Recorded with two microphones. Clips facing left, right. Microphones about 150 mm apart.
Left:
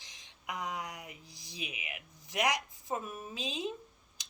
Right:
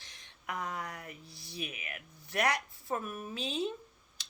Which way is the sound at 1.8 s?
15° left (ahead or behind).